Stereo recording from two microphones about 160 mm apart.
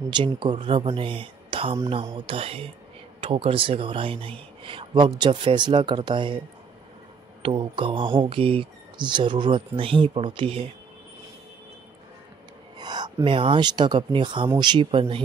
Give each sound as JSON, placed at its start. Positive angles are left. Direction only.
{"t": 0.1, "sound": "speech", "side_deg": -30}
{"t": 7.4, "sound": "speech", "side_deg": -35}
{"t": 12.7, "sound": "speech", "side_deg": -25}